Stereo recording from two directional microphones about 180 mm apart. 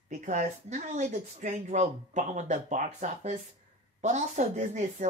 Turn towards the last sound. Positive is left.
turn(degrees=-40)  # may be behind; listen again after turning